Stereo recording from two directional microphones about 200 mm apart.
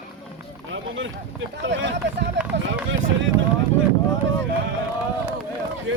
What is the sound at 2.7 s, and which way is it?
Speech, 75° right (ahead or behind).